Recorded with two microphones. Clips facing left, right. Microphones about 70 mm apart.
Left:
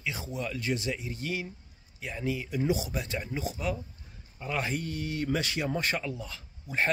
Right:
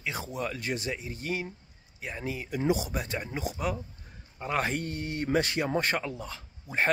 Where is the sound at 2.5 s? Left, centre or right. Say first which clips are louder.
Right 3 dB; right.